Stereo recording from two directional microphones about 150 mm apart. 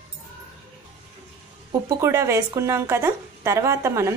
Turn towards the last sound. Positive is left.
turn(degrees=-20)  # may be behind; listen again after turning